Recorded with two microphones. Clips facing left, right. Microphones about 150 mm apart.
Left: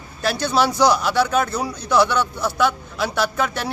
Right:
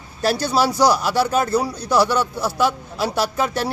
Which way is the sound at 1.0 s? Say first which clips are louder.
Even; 35° right (ahead or behind).